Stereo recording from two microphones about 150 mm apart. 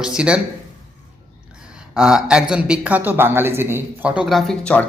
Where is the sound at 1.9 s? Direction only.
5° right (ahead or behind).